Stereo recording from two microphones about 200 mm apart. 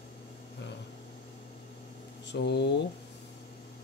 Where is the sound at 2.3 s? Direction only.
60° left (ahead or behind).